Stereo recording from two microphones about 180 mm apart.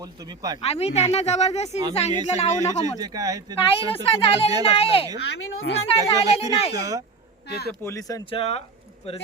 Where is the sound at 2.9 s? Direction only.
20° right (ahead or behind).